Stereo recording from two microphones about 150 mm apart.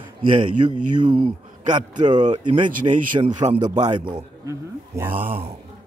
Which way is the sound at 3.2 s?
50° right (ahead or behind).